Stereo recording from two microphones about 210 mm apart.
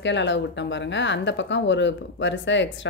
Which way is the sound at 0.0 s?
60° left (ahead or behind).